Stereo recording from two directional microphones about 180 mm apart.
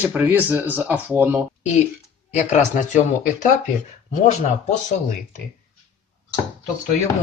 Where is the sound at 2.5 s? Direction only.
45° left (ahead or behind).